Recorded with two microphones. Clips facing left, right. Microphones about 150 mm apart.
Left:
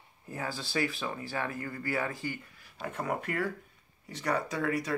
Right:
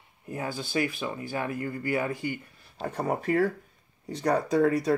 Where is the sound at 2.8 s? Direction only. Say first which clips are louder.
Right 5 dB; 35° right (ahead or behind).